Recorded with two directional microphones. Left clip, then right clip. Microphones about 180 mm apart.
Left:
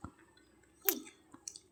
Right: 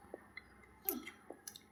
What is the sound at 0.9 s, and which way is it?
Chewing, 50° left (ahead or behind).